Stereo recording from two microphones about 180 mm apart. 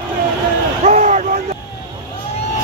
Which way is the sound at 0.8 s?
40° right (ahead or behind).